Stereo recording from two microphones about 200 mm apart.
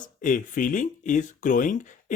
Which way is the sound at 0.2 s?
40° left (ahead or behind).